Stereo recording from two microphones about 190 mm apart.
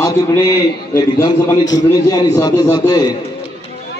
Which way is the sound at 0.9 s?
15° left (ahead or behind).